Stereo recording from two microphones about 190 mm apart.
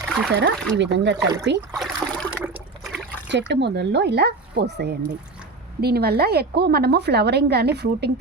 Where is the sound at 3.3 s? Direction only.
65° right (ahead or behind).